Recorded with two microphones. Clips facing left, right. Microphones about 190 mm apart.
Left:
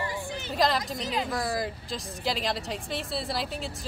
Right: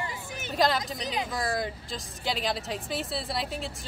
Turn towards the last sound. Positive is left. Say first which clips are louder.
# left 1 dB
turn(degrees=0)  # may be behind; listen again after turning